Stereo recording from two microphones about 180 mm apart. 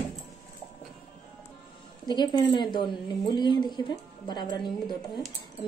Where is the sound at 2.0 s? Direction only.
25° left (ahead or behind).